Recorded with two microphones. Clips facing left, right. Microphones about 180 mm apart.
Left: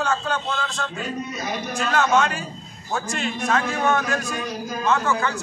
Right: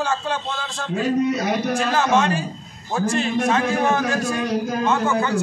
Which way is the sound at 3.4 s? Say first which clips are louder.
Left 1 dB; 25° right (ahead or behind).